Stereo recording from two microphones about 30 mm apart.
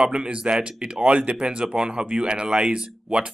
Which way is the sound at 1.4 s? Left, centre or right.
Right.